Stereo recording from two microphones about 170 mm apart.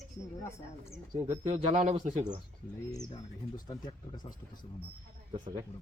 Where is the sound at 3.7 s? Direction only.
25° left (ahead or behind).